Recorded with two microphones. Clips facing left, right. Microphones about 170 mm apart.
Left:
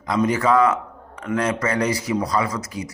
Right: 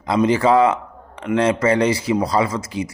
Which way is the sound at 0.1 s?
25° right (ahead or behind).